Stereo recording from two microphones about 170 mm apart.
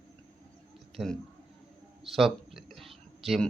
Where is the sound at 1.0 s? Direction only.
Centre (ahead or behind).